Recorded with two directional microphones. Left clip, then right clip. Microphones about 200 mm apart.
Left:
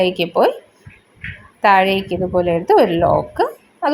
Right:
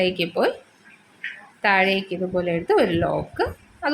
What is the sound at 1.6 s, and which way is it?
A woman's voice, 20° left (ahead or behind).